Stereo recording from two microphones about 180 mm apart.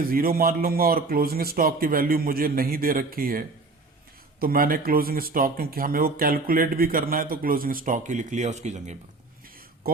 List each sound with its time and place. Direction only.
0.0 s a man's voice: 55° right (ahead or behind)
9.8 s speech: 55° right (ahead or behind)